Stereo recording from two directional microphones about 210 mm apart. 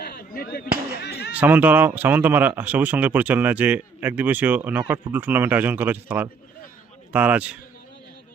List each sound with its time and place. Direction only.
0.0 s fireworks: 50° left (ahead or behind)
1.0 s a sound: 50° left (ahead or behind)
1.3 s speech: 5° right (ahead or behind)